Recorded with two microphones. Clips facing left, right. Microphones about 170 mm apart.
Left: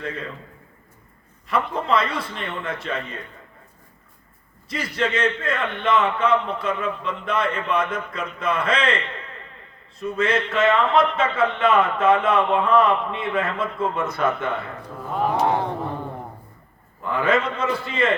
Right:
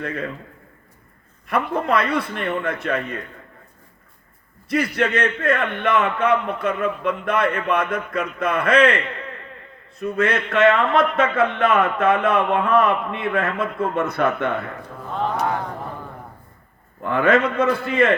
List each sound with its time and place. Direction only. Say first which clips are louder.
1.5 s speech: right 2 dB; 60° right (ahead or behind)
4.7 s speech: right 4 dB; 60° right (ahead or behind)
10.0 s speech: right 1 dB; 60° right (ahead or behind)
15.0 s mantra: left 1 dB; 5° left (ahead or behind)
15.4 s a sound: left 3 dB; 30° left (ahead or behind)
17.0 s speech: right 4 dB; 55° right (ahead or behind)